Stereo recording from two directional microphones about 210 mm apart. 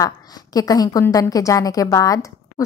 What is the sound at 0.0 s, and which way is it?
A woman's voice, 15° left (ahead or behind).